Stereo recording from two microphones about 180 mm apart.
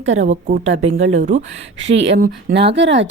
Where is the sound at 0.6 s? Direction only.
35° right (ahead or behind).